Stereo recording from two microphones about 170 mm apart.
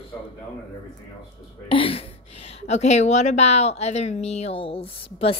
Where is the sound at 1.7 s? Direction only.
30° left (ahead or behind).